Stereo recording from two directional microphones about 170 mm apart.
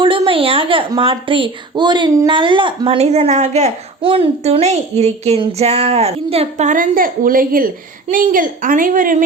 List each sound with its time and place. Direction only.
0.0 s a woman's voice: 30° right (ahead or behind); by 9.2 s 50° right (ahead or behind)